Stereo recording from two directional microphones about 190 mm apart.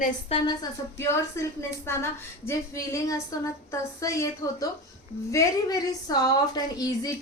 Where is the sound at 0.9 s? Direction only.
15° left (ahead or behind).